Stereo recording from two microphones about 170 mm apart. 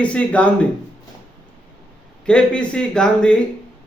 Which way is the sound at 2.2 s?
5° left (ahead or behind).